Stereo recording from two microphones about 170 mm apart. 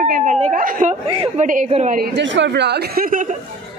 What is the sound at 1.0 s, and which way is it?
Speech, 30° right (ahead or behind).